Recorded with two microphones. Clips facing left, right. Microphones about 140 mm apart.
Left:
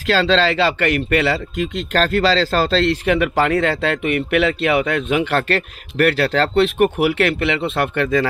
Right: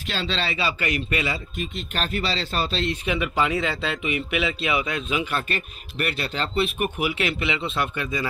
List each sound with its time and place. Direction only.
0.0 s speech: 90° left; by 8.3 s 70° left (ahead or behind)